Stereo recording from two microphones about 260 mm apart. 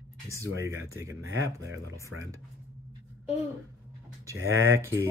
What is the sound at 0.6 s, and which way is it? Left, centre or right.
Speech, centre.